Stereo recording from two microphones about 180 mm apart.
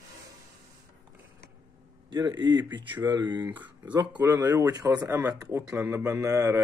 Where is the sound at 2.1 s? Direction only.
20° right (ahead or behind).